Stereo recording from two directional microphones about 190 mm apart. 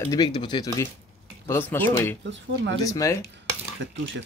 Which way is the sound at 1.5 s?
10° left (ahead or behind).